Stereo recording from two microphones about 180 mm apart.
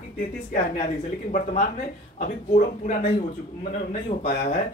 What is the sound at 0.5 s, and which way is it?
Speech, 45° left (ahead or behind).